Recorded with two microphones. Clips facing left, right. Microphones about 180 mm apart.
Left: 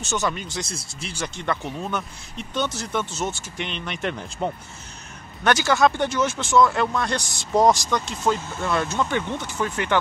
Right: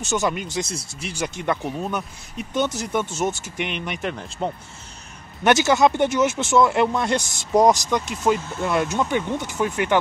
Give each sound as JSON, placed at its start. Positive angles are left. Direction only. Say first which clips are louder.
{"t": 0.1, "sound": "speech", "louder": "right 3 dB", "side_deg": -10}
{"t": 5.4, "sound": "speech", "louder": "right 2 dB", "side_deg": -20}